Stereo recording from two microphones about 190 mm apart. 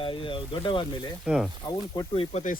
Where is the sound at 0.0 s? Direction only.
25° left (ahead or behind).